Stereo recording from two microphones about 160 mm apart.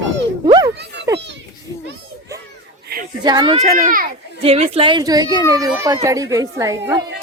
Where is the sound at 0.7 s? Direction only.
90° right.